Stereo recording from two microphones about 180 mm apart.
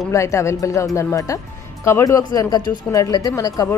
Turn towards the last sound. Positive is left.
turn(degrees=15)  # may be behind; listen again after turning